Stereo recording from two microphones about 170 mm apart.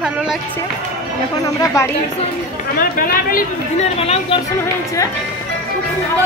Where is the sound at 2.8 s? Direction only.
55° left (ahead or behind).